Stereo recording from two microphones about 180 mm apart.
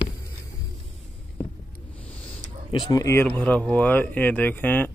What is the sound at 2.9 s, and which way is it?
Speech, 15° left (ahead or behind).